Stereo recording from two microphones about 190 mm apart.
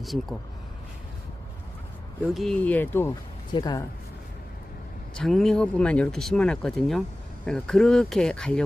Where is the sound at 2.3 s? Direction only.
Centre (ahead or behind); by 3.8 s 20° left (ahead or behind).